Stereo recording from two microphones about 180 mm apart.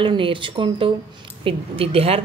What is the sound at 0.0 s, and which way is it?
A woman's voice, 30° right (ahead or behind).